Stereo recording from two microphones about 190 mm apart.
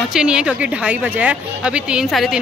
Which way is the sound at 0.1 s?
5° right (ahead or behind).